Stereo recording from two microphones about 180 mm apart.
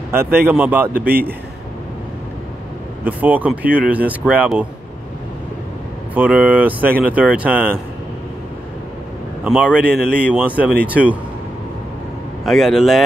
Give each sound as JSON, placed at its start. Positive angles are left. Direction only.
{"t": 0.1, "sound": "speech", "side_deg": -15}
{"t": 0.9, "sound": "a man's voice", "side_deg": -55}
{"t": 3.0, "sound": "speech", "side_deg": -10}
{"t": 6.1, "sound": "speech", "side_deg": -10}
{"t": 9.4, "sound": "a man's voice", "side_deg": -5}
{"t": 12.4, "sound": "a man's voice", "side_deg": 0}